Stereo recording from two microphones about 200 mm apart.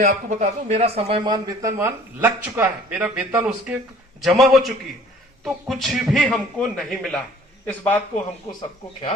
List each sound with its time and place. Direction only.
0.0 s a man's voice: 35° right (ahead or behind); by 7.9 s 10° left (ahead or behind)